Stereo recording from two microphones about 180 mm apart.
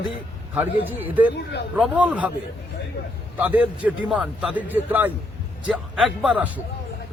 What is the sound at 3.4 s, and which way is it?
A man's voice, 10° right (ahead or behind).